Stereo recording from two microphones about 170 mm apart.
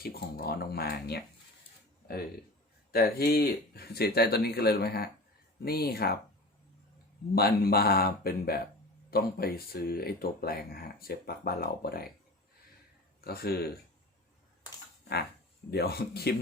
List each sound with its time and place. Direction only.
0.0 s speech: 65° left (ahead or behind)
2.9 s speech: 60° left (ahead or behind)
7.3 s speech: 65° left (ahead or behind)
13.2 s speech: 65° left (ahead or behind)
15.7 s speech: 65° left (ahead or behind)